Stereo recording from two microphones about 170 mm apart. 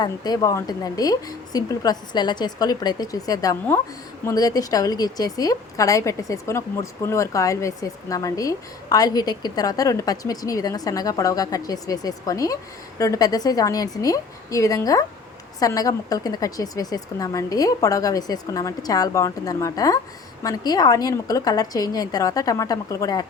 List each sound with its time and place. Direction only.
0.0 s a woman's voice: 20° left (ahead or behind)